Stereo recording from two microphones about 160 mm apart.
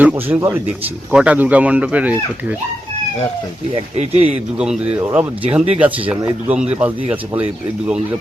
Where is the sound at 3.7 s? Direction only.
40° right (ahead or behind).